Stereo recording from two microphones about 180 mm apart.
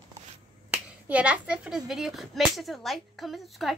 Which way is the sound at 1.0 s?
5° right (ahead or behind).